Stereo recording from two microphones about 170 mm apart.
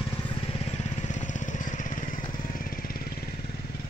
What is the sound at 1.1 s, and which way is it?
Vehicle, 45° left (ahead or behind).